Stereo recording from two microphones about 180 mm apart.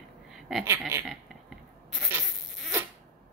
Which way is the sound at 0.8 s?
15° right (ahead or behind).